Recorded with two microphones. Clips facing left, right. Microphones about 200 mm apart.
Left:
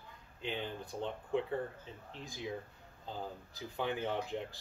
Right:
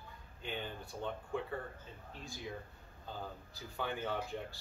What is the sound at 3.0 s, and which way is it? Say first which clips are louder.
Speech: left 3 dB; 20° left (ahead or behind).